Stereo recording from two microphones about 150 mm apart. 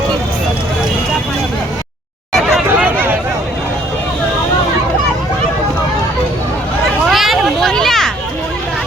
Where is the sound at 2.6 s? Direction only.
10° right (ahead or behind).